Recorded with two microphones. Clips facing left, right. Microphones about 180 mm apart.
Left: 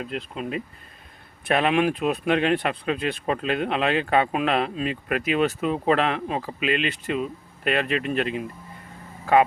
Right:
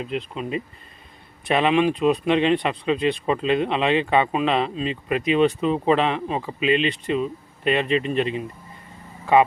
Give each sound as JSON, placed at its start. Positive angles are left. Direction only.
{"t": 0.0, "sound": "speech", "side_deg": 50}
{"t": 1.5, "sound": "speech", "side_deg": 0}